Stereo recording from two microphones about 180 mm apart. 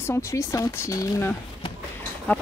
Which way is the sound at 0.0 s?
15° left (ahead or behind).